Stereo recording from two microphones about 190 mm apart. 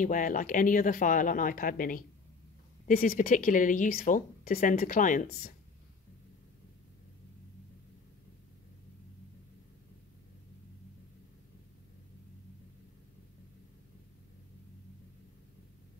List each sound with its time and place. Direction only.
0.0 s speech: 45° left (ahead or behind)